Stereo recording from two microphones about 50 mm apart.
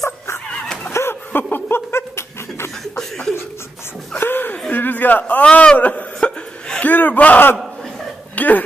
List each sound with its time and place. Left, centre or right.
0.5 s a sound: centre
1.0 s chuckle: left
1.3 s laughter: left
3.0 s chuckle: centre
4.2 s a sound: left
5.3 s a man's voice: left
6.1 s chuckle: centre
6.8 s a sound: left
8.4 s hiccup: left